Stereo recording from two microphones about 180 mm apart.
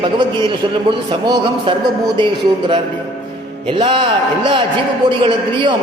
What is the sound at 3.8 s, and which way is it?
A man's voice, 30° right (ahead or behind).